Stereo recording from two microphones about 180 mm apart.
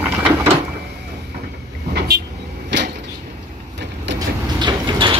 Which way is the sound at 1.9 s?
60° right (ahead or behind).